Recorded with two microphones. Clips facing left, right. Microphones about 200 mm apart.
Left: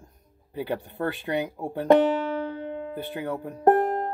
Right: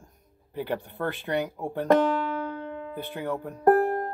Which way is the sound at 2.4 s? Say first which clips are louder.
Left 2 dB; 15° left (ahead or behind).